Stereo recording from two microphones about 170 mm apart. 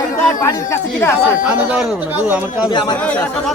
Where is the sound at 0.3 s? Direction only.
20° left (ahead or behind).